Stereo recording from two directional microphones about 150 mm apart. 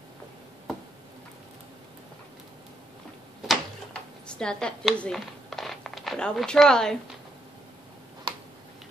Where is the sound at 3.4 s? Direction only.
5° left (ahead or behind).